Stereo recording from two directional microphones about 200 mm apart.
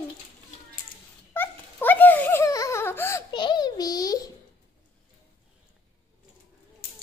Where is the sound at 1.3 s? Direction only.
10° left (ahead or behind).